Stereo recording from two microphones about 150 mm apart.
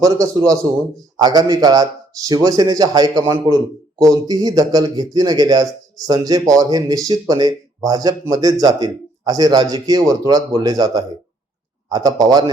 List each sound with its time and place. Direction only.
0.0 s a man's voice: 25° right (ahead or behind)